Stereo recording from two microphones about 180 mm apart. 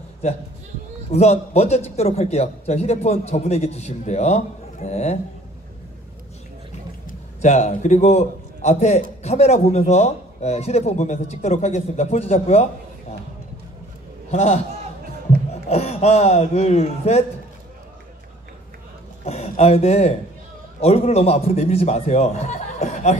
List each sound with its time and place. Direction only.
1.1 s a man's voice: 40° left (ahead or behind)
7.1 s a man's voice: 40° left (ahead or behind)
14.3 s a man's voice: 35° left (ahead or behind)
15.7 s a man's voice: 35° left (ahead or behind)
19.2 s a man's voice: 35° left (ahead or behind)